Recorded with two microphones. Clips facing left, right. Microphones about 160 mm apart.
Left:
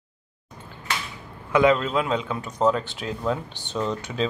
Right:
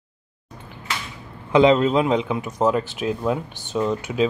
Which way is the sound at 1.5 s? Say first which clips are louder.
Right 4 dB; 25° right (ahead or behind).